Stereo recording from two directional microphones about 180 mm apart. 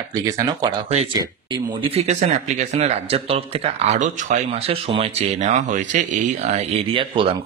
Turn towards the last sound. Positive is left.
turn(degrees=-30)  # may be behind; listen again after turning